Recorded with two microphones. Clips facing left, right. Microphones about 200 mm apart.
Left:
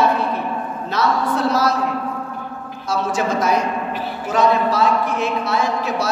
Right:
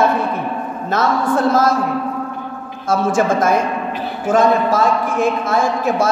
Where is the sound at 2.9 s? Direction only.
50° right (ahead or behind).